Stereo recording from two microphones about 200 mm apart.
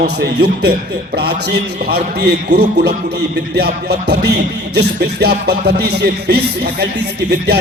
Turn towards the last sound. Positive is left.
turn(degrees=-55)  # may be behind; listen again after turning